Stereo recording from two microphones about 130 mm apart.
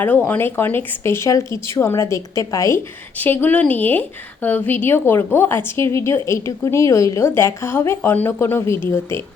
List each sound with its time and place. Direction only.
0.0 s a woman's voice: 15° left (ahead or behind)
3.2 s a woman's voice: 15° left (ahead or behind)